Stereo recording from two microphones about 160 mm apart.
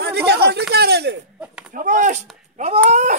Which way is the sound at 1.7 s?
55° right (ahead or behind).